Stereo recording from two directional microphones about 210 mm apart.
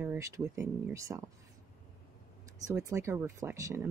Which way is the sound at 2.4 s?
15° right (ahead or behind).